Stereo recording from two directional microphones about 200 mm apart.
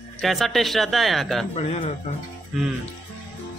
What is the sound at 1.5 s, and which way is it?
Speech, 35° left (ahead or behind).